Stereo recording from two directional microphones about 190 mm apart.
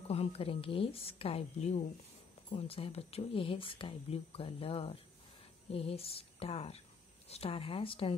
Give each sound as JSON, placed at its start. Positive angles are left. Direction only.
{"t": 0.1, "sound": "a woman's voice", "side_deg": 30}